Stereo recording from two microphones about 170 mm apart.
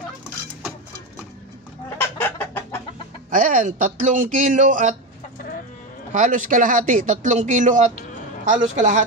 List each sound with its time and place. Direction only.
2.0 s chicken: 15° left (ahead or behind)
3.3 s speech: 50° right (ahead or behind)
6.1 s speech: 50° right (ahead or behind)